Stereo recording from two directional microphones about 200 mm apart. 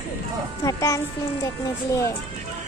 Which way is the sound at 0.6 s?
15° left (ahead or behind).